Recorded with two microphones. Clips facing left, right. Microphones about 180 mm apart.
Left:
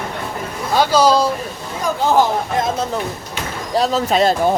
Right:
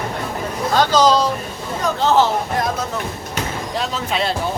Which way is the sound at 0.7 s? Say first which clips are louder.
Left 1 dB; 10° left (ahead or behind).